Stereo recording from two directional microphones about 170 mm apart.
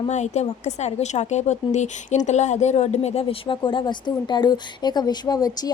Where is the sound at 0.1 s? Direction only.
45° left (ahead or behind).